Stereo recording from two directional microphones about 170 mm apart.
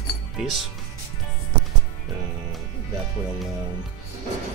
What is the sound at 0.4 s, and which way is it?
Speech, centre (ahead or behind).